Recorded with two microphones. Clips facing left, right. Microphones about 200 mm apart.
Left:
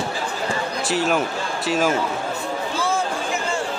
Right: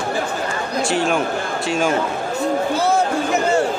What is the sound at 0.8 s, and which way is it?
Speech, 5° left (ahead or behind).